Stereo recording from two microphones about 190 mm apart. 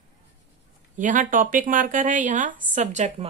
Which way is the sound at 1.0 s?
45° right (ahead or behind).